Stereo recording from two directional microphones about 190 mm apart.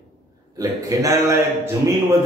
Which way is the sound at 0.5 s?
20° right (ahead or behind).